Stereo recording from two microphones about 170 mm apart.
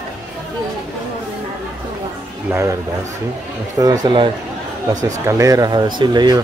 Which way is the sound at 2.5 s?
15° right (ahead or behind).